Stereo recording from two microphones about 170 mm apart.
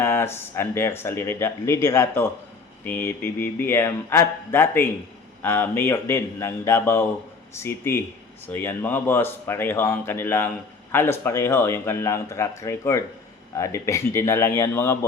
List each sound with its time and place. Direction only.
0.0 s speech: 15° left (ahead or behind)